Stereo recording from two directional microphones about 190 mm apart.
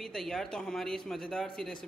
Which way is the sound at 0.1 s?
Centre (ahead or behind).